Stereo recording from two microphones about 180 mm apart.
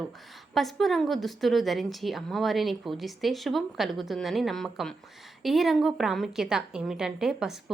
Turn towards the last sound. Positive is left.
turn(degrees=-5)  # may be behind; listen again after turning